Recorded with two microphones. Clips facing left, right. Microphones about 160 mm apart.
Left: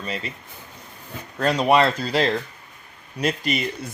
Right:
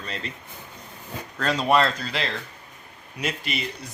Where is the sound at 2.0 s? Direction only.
35° left (ahead or behind).